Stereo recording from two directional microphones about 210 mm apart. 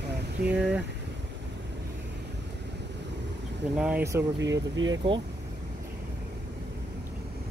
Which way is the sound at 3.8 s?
5° right (ahead or behind).